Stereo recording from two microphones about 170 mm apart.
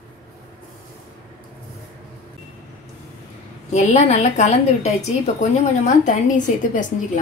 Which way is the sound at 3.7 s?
40° left (ahead or behind).